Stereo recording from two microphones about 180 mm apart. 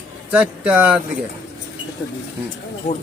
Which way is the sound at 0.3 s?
5° right (ahead or behind).